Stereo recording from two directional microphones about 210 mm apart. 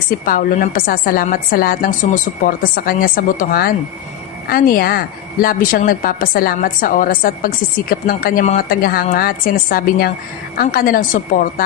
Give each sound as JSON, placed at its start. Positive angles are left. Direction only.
{"t": 0.3, "sound": "a woman's voice", "side_deg": 40}